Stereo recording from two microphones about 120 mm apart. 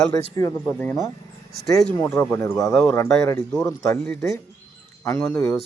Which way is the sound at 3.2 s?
30° left (ahead or behind).